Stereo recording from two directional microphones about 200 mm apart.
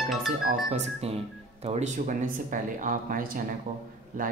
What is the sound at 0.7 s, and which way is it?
Speech, 35° right (ahead or behind).